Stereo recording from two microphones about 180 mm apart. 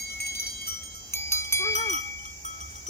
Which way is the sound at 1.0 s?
15° left (ahead or behind).